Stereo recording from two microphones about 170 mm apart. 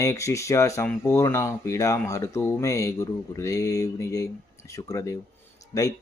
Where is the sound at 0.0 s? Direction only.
15° left (ahead or behind).